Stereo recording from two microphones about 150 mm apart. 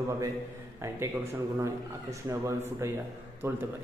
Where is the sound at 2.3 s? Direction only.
20° right (ahead or behind).